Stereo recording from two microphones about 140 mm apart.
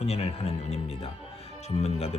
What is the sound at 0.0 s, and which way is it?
Speech, 50° left (ahead or behind).